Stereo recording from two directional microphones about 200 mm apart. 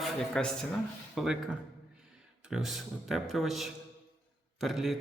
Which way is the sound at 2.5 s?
Centre (ahead or behind).